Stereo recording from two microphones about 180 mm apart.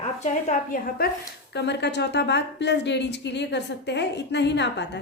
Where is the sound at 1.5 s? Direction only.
70° left (ahead or behind).